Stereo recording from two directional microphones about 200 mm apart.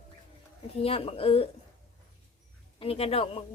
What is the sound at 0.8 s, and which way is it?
Speech, 30° left (ahead or behind).